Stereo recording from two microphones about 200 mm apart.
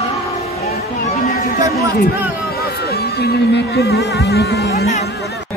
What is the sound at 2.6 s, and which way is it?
Music, 50° left (ahead or behind).